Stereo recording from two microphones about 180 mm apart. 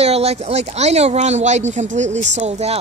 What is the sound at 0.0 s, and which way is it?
A woman's voice, 35° right (ahead or behind).